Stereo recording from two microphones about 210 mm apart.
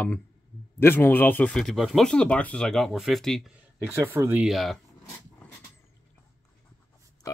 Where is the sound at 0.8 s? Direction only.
10° left (ahead or behind).